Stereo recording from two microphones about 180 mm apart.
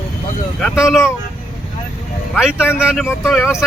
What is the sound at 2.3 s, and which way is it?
Speech, 5° right (ahead or behind).